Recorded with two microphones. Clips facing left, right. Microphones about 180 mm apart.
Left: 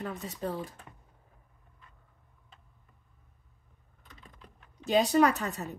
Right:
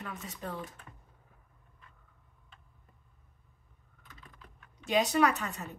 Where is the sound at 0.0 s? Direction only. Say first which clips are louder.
Left 6 dB; 35° left (ahead or behind).